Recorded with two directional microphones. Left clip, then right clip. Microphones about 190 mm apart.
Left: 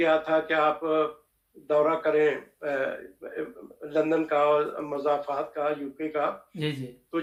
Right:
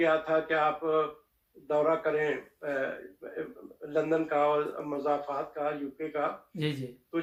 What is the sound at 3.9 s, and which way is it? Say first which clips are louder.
Speech: left 3 dB; 40° left (ahead or behind).